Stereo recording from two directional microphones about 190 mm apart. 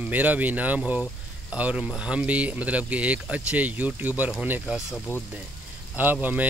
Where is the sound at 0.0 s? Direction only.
10° right (ahead or behind); by 5.2 s 5° left (ahead or behind).